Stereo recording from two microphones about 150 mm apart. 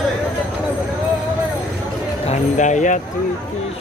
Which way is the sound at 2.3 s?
55° left (ahead or behind).